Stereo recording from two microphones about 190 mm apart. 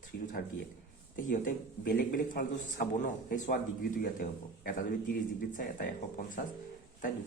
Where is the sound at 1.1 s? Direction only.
45° left (ahead or behind).